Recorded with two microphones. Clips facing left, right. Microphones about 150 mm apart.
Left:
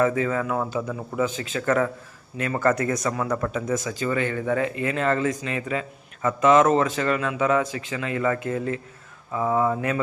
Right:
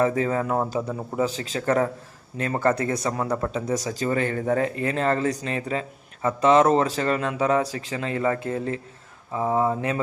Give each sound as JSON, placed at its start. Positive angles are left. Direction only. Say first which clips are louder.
{"t": 0.0, "sound": "speech", "louder": "even", "side_deg": -35}